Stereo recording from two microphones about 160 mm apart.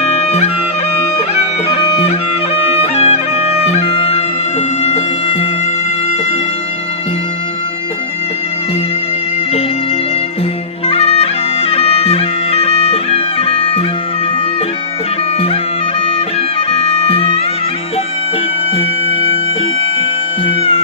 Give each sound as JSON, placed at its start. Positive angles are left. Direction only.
{"t": 0.0, "sound": "music", "side_deg": 40}
{"t": 10.9, "sound": "music", "side_deg": 40}
{"t": 11.7, "sound": "bagpipes", "side_deg": 40}
{"t": 16.7, "sound": "music", "side_deg": 35}